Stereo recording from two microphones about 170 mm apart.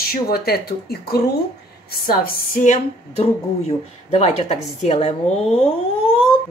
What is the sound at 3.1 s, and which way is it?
A woman's voice, 35° left (ahead or behind).